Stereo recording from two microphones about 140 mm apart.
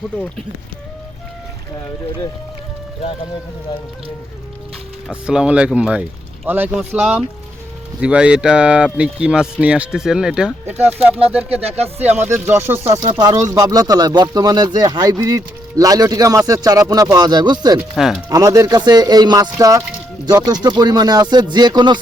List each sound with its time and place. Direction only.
5.0 s speech: 5° right (ahead or behind)
11.4 s speech: 45° right (ahead or behind)
12.2 s speech: 15° right (ahead or behind)
12.9 s speech: 30° right (ahead or behind)
17.9 s speech: centre (ahead or behind)
18.3 s speech: 25° right (ahead or behind)